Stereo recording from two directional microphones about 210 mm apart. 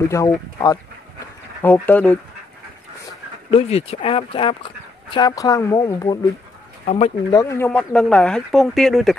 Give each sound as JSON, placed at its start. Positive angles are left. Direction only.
{"t": 0.0, "sound": "speech", "side_deg": 15}
{"t": 1.2, "sound": "dog", "side_deg": 10}
{"t": 3.4, "sound": "speech", "side_deg": 30}
{"t": 6.9, "sound": "speech", "side_deg": 25}
{"t": 7.3, "sound": "speech", "side_deg": 10}